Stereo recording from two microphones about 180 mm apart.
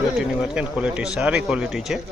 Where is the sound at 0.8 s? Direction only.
5° right (ahead or behind).